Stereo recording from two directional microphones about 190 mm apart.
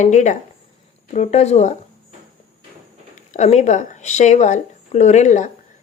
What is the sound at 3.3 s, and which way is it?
A woman's voice, 35° left (ahead or behind).